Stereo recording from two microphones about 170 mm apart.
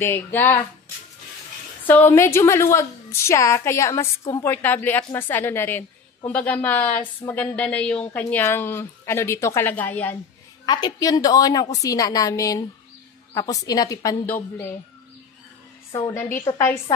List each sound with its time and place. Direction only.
0.0 s a woman's voice: 10° left (ahead or behind)
1.9 s a woman's voice: 15° left (ahead or behind)
10.6 s a woman's voice: 25° left (ahead or behind)
15.9 s a woman's voice: 15° left (ahead or behind)